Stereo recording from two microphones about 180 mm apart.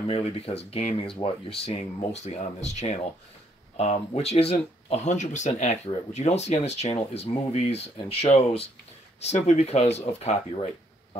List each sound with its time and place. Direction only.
0.0 s speech: 35° left (ahead or behind)